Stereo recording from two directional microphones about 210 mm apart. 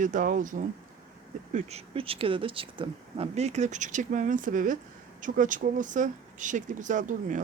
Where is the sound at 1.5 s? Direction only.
30° right (ahead or behind).